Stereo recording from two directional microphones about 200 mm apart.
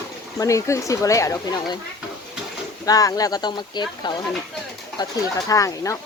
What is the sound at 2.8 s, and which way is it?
Speech, 15° left (ahead or behind).